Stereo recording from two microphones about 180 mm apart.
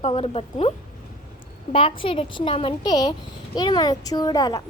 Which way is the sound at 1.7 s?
30° left (ahead or behind).